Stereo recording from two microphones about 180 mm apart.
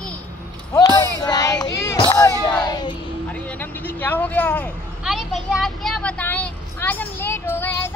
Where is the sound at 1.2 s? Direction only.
20° left (ahead or behind).